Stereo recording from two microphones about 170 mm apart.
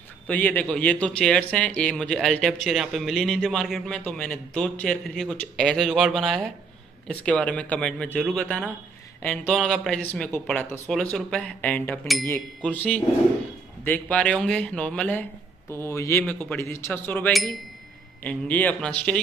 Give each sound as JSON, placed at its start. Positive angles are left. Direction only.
{"t": 0.3, "sound": "a man's voice", "side_deg": 10}
{"t": 17.3, "sound": "a man's voice", "side_deg": 0}